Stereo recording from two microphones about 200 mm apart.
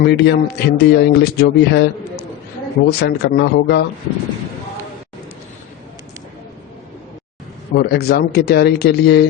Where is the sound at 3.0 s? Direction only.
55° left (ahead or behind).